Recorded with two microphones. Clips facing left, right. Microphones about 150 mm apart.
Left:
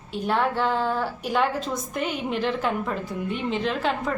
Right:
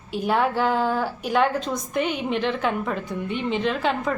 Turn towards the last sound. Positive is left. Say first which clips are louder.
# right 2 dB
turn(degrees=0)  # may be behind; listen again after turning